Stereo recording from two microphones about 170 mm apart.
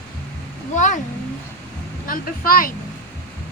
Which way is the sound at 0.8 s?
45° left (ahead or behind).